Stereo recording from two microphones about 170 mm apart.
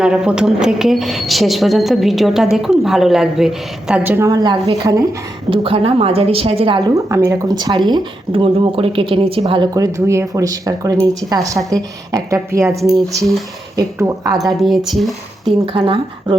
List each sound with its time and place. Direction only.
0.0 s speech: 5° right (ahead or behind); by 5.0 s 25° right (ahead or behind)
5.5 s a woman's voice: 35° right (ahead or behind)
14.5 s speech: centre (ahead or behind)
15.6 s speech: 30° right (ahead or behind)